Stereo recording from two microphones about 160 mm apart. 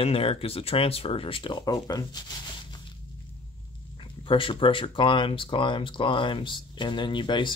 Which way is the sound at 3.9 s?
35° left (ahead or behind).